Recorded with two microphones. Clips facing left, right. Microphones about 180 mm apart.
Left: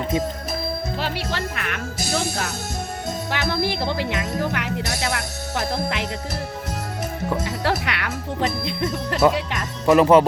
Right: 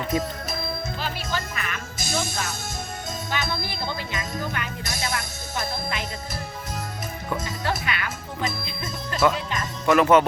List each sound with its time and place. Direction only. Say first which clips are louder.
0.1 s speech: left 2 dB; 25° left (ahead or behind)
0.9 s speech: left 3 dB; 75° left (ahead or behind)
7.3 s speech: left 4 dB; 70° left (ahead or behind)
9.8 s speech: left 4 dB; 35° left (ahead or behind)